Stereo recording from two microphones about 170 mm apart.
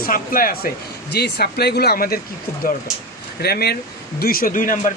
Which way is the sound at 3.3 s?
70° left (ahead or behind).